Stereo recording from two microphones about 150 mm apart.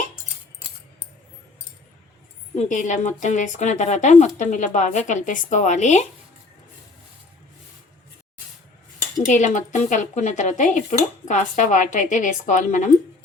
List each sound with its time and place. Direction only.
2.6 s a woman's voice: 55° left (ahead or behind)
9.3 s speech: 55° left (ahead or behind)